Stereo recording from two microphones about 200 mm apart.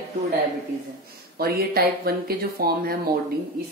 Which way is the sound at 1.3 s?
50° right (ahead or behind).